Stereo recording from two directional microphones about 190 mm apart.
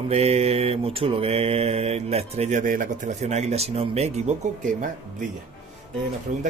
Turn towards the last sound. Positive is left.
turn(degrees=-40)  # may be behind; listen again after turning